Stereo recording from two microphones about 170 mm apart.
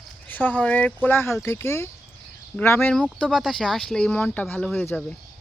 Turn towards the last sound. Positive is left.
turn(degrees=10)  # may be behind; listen again after turning